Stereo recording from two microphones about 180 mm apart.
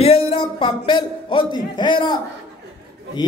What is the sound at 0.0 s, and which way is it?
Speech, 35° left (ahead or behind).